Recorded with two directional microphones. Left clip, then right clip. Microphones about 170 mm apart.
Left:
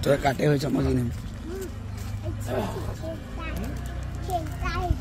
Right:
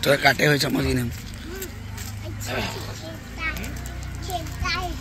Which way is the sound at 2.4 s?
50° left (ahead or behind).